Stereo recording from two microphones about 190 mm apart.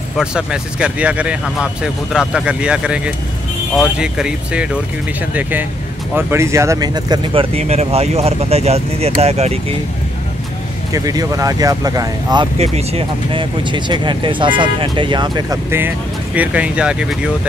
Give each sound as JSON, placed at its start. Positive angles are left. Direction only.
{"t": 0.2, "sound": "speech", "side_deg": -5}
{"t": 7.5, "sound": "speech", "side_deg": -35}
{"t": 10.9, "sound": "speech", "side_deg": -20}
{"t": 12.5, "sound": "speech", "side_deg": -35}